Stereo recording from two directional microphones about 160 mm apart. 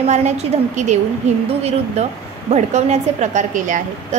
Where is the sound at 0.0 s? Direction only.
45° right (ahead or behind).